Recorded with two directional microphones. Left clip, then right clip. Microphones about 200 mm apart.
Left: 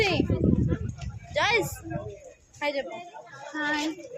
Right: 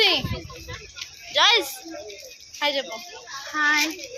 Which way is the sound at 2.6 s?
5° right (ahead or behind).